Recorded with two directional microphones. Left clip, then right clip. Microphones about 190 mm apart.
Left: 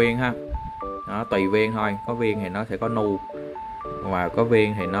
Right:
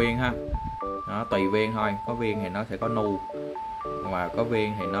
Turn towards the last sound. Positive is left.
turn(degrees=15)  # may be behind; listen again after turning